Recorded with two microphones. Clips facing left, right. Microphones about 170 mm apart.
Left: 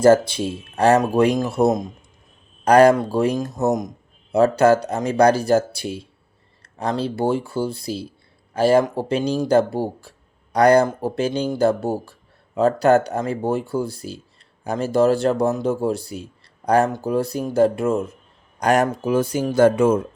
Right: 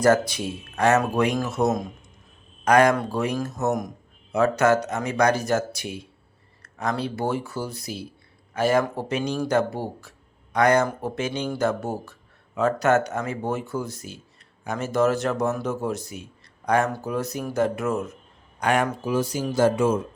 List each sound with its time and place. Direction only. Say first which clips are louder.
0.0 s speech: left 5 dB; 30° left (ahead or behind)
18.6 s speech: left 5 dB; 40° left (ahead or behind); by 20.0 s 55° left (ahead or behind)